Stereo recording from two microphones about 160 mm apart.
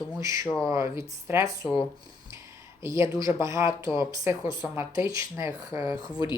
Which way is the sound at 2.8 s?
20° right (ahead or behind).